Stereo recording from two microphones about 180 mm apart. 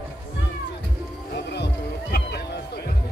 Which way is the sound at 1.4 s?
70° left (ahead or behind).